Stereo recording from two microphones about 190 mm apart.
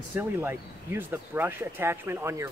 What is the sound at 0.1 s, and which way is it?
Speech, 10° right (ahead or behind).